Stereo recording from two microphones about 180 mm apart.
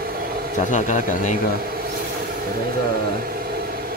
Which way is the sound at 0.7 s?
45° left (ahead or behind).